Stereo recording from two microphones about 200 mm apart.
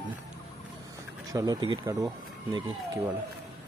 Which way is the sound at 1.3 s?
20° right (ahead or behind).